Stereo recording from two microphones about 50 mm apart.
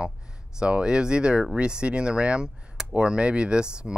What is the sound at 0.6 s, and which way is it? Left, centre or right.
Speech, centre.